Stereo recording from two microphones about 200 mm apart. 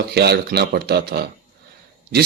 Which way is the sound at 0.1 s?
55° right (ahead or behind).